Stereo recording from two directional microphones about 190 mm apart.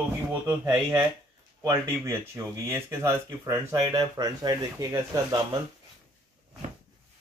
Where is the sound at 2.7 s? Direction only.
15° right (ahead or behind).